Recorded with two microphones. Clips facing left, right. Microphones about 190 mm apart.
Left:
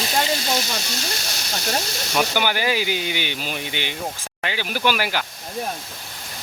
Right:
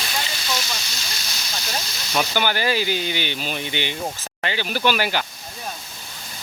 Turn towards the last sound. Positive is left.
turn(degrees=5)  # may be behind; listen again after turning